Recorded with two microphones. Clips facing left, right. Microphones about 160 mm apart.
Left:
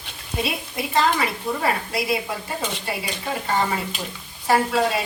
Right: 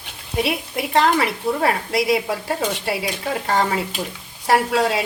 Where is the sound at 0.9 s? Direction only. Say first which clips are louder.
Right 3 dB; 70° right (ahead or behind).